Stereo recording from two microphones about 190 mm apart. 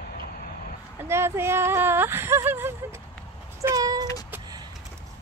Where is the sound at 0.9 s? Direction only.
15° right (ahead or behind).